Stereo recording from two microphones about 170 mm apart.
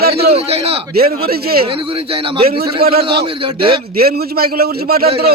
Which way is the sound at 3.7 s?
65° right (ahead or behind).